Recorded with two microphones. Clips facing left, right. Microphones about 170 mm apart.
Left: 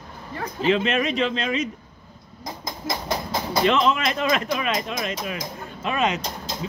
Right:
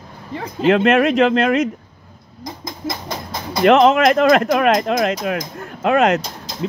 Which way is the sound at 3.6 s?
65° right (ahead or behind).